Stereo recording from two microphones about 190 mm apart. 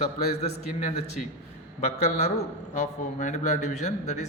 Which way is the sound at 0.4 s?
35° left (ahead or behind).